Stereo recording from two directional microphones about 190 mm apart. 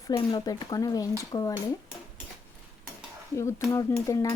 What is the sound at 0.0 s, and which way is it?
Speech, 20° left (ahead or behind).